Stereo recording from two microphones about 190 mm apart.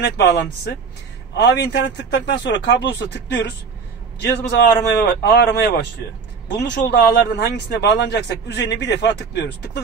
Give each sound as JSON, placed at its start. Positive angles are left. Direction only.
{"t": 0.0, "sound": "a man's voice", "side_deg": 60}
{"t": 4.5, "sound": "a man's voice", "side_deg": 60}